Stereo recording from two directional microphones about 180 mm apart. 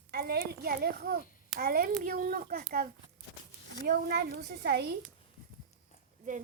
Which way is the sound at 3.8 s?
60° right (ahead or behind).